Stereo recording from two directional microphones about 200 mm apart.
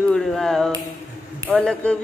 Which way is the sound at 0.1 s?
Centre (ahead or behind).